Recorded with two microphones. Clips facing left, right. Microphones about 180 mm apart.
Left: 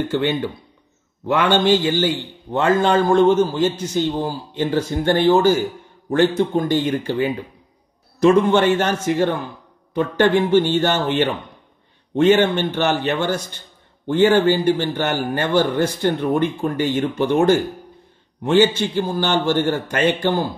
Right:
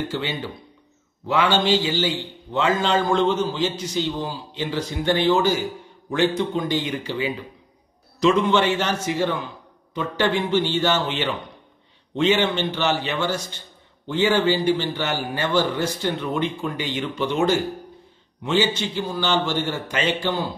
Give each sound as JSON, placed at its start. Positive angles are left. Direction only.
{"t": 0.1, "sound": "a man's voice", "side_deg": 55}